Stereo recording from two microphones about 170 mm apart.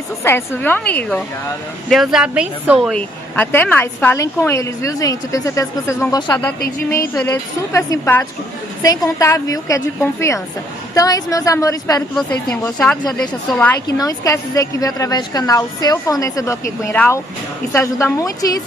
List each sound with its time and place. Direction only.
0.2 s a woman's voice: 15° left (ahead or behind)
1.9 s speech: centre (ahead or behind)
2.9 s a woman's voice: 10° left (ahead or behind)
12.2 s a woman's voice: 5° left (ahead or behind)
13.9 s a woman's voice: 20° left (ahead or behind)